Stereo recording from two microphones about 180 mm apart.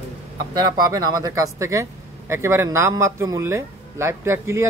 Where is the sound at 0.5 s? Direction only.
20° right (ahead or behind).